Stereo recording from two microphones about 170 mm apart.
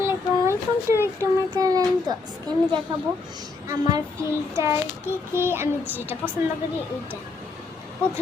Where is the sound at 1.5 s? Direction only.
20° right (ahead or behind).